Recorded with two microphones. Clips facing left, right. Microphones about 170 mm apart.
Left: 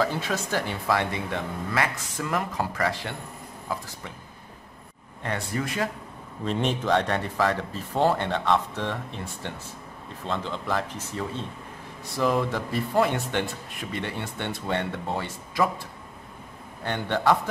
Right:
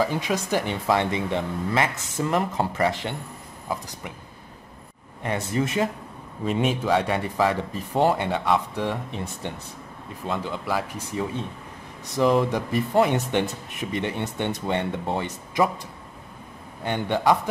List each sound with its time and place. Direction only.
0.0 s speech: 15° right (ahead or behind)
5.2 s speech: 20° right (ahead or behind)
6.4 s speech: 5° right (ahead or behind)
16.8 s speech: 15° right (ahead or behind)